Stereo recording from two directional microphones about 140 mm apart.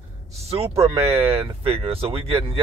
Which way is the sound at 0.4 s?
45° right (ahead or behind).